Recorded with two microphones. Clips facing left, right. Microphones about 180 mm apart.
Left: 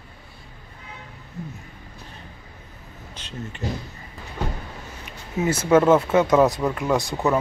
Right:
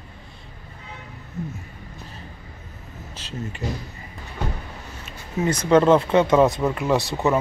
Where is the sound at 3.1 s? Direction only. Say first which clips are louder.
Right 2 dB; 5° right (ahead or behind).